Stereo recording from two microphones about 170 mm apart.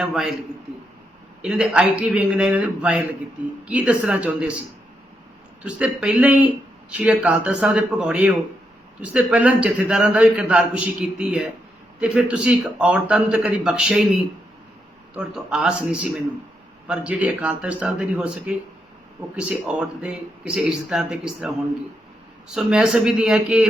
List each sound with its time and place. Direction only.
0.0 s speech: centre (ahead or behind)
1.4 s a man's voice: 5° right (ahead or behind)
5.6 s a man's voice: 5° right (ahead or behind)
15.1 s a man's voice: 5° right (ahead or behind)
22.5 s speech: 5° right (ahead or behind)